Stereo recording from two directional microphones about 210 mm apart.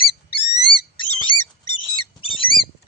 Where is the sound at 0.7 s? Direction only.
25° left (ahead or behind).